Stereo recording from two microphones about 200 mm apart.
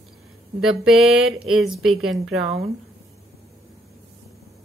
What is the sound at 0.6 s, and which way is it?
Speech, centre (ahead or behind).